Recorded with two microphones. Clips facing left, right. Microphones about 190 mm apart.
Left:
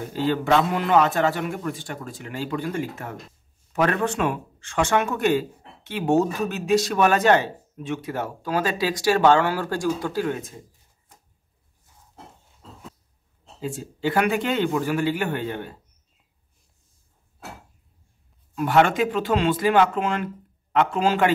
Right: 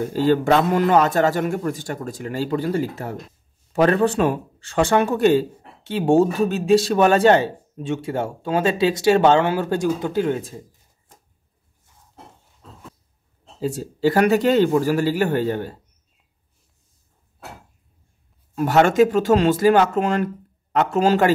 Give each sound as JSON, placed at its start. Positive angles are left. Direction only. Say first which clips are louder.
{"t": 0.1, "sound": "a man's voice", "louder": "right 3 dB", "side_deg": -40}
{"t": 13.6, "sound": "a man's voice", "louder": "right 7 dB", "side_deg": -40}
{"t": 18.5, "sound": "a man's voice", "louder": "right 2 dB", "side_deg": -40}